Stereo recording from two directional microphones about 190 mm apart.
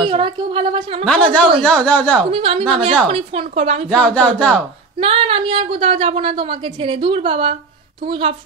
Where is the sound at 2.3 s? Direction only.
30° right (ahead or behind).